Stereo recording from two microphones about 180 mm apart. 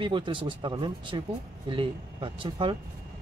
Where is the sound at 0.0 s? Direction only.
25° right (ahead or behind).